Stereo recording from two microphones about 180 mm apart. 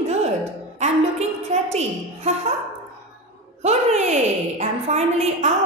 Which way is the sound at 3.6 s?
40° right (ahead or behind).